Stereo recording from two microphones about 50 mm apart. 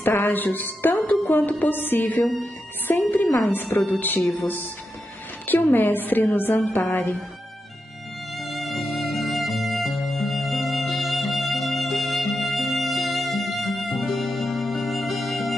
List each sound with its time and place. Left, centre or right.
0.0 s a woman's voice: left
8.5 s music: centre